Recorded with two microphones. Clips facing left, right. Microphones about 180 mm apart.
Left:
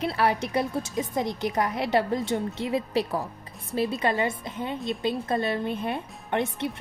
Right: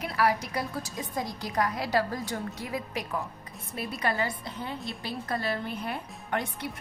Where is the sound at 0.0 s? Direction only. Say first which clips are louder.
Left 2 dB; 30° left (ahead or behind).